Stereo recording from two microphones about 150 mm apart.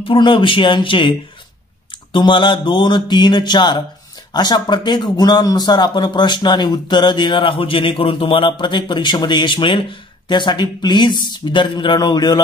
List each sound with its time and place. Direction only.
0.1 s speech: 35° left (ahead or behind)
2.1 s speech: 30° left (ahead or behind)